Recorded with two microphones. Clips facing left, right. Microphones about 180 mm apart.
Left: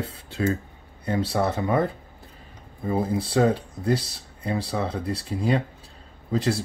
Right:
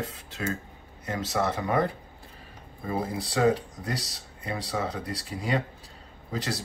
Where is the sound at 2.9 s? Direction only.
25° left (ahead or behind).